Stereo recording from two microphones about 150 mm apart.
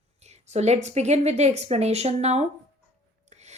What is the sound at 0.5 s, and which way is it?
A woman's voice, 50° right (ahead or behind).